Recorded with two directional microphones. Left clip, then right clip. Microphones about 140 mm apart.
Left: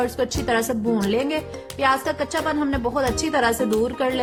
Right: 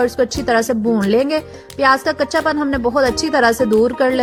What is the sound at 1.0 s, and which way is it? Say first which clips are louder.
A woman's voice: right 7 dB; 40° right (ahead or behind).